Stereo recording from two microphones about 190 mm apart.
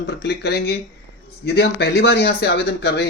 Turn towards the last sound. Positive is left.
turn(degrees=60)  # may be behind; listen again after turning